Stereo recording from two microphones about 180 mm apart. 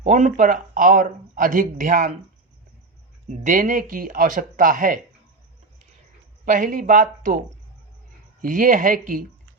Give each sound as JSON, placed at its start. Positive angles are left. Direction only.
{"t": 0.0, "sound": "speech", "side_deg": -45}
{"t": 3.2, "sound": "speech", "side_deg": -45}
{"t": 6.4, "sound": "speech", "side_deg": -45}
{"t": 8.4, "sound": "speech", "side_deg": -50}